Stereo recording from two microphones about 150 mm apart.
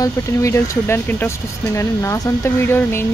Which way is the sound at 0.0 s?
20° left (ahead or behind).